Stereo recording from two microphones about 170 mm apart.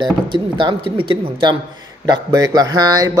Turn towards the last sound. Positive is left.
turn(degrees=-20)  # may be behind; listen again after turning